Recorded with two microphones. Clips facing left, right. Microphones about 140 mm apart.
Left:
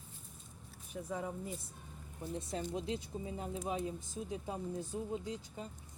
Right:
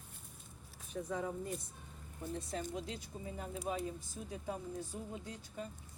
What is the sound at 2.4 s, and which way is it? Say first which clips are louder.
Speech: left 3 dB; 25° left (ahead or behind).